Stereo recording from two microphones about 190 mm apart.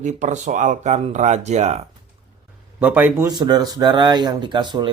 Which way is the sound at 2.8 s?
10° right (ahead or behind).